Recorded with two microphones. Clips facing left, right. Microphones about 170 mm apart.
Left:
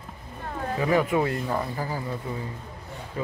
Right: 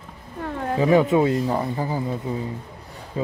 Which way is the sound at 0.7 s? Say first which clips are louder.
Right 6 dB; 20° right (ahead or behind).